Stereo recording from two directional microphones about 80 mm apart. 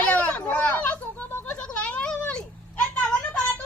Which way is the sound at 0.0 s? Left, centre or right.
Centre.